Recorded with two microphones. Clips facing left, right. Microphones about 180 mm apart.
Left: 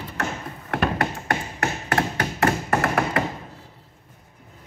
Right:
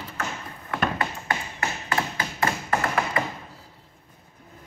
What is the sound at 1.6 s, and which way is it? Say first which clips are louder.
Tap: left 4 dB; 70° left (ahead or behind).